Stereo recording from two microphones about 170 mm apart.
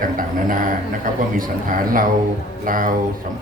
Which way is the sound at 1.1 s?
55° right (ahead or behind).